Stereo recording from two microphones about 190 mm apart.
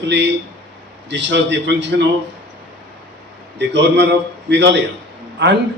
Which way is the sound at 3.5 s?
65° right (ahead or behind).